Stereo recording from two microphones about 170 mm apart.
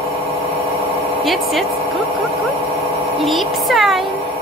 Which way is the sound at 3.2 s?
Centre (ahead or behind).